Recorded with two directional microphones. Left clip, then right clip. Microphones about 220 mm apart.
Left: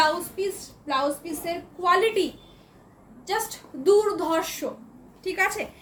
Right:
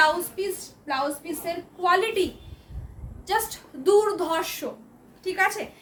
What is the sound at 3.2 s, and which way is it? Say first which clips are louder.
A woman's voice: right 2 dB; 20° right (ahead or behind).